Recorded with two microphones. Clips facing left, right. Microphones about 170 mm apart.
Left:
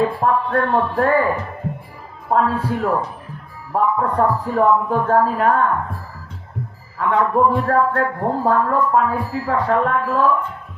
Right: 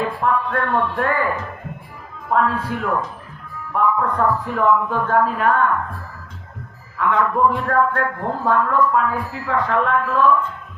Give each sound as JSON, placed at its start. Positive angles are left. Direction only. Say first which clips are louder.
{"t": 0.0, "sound": "a man's voice", "louder": "left 3 dB", "side_deg": 35}
{"t": 2.6, "sound": "a man's voice", "louder": "left 3 dB", "side_deg": 35}
{"t": 7.0, "sound": "a man's voice", "louder": "left 1 dB", "side_deg": 30}